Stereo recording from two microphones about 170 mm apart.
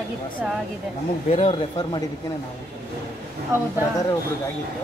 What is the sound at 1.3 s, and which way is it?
Speech, 35° left (ahead or behind).